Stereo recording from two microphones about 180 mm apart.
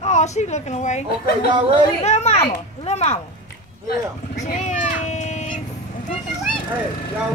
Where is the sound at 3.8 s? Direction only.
40° left (ahead or behind).